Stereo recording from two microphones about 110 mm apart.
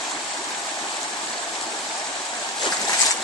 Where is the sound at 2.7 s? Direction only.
35° left (ahead or behind).